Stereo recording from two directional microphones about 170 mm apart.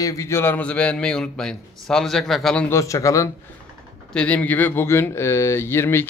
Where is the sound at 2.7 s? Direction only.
20° left (ahead or behind).